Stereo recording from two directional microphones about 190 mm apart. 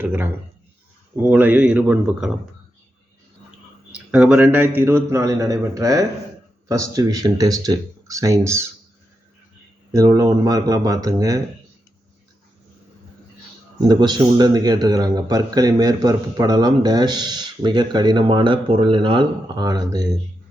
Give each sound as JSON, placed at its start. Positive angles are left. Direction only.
{"t": 0.0, "sound": "a man's voice", "side_deg": -10}
{"t": 3.9, "sound": "a man's voice", "side_deg": -5}
{"t": 9.9, "sound": "a man's voice", "side_deg": -20}
{"t": 13.8, "sound": "a man's voice", "side_deg": -20}